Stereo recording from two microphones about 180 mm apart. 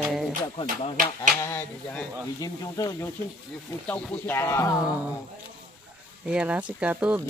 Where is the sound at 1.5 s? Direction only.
5° left (ahead or behind).